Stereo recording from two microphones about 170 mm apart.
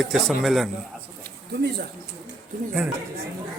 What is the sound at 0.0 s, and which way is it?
Speech, centre (ahead or behind).